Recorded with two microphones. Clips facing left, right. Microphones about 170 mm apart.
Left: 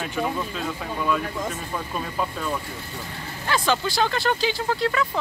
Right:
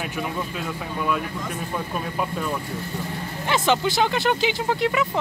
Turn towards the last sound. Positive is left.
turn(degrees=-20)  # may be behind; listen again after turning